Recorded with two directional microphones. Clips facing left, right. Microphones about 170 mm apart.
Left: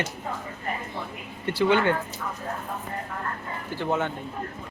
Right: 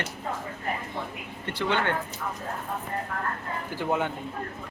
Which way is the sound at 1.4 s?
10° left (ahead or behind).